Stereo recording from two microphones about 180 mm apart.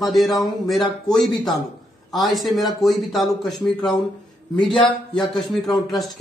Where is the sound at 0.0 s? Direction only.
Centre (ahead or behind).